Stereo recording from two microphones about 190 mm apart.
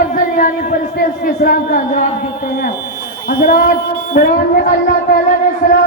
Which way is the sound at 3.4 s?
50° left (ahead or behind).